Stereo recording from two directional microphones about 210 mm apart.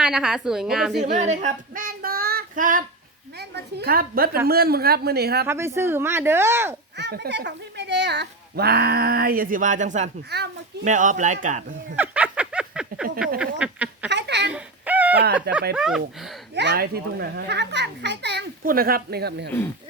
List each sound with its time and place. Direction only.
0.0 s a woman's voice: 5° right (ahead or behind)
1.2 s child singing: 35° right (ahead or behind)
3.5 s speech: 50° right (ahead or behind)
5.5 s speech: 10° right (ahead or behind)
6.9 s speech: 55° right (ahead or behind); by 10.1 s 35° right (ahead or behind)
10.2 s speech: 50° right (ahead or behind)
10.8 s speech: 35° right (ahead or behind)
11.9 s a sound: 5° right (ahead or behind)
14.1 s a sound: 55° right (ahead or behind)
14.5 s a sound: 5° right (ahead or behind)
15.7 s a woman's voice: 5° right (ahead or behind)
16.6 s speech: 50° right (ahead or behind)